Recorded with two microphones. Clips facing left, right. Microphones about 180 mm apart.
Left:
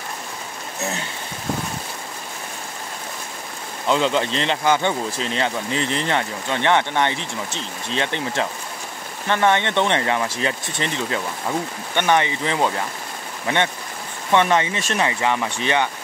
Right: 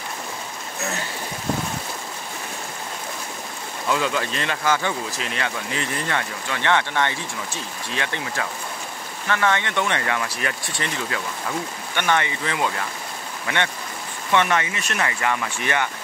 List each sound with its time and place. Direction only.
3.8 s speech: 25° left (ahead or behind)
14.3 s speech: 25° left (ahead or behind)